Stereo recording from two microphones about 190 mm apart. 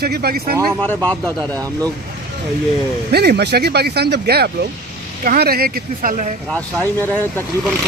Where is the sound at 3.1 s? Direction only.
55° right (ahead or behind).